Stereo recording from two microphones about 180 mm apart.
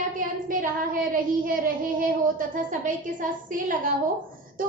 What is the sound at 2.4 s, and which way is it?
A woman's voice, 50° right (ahead or behind).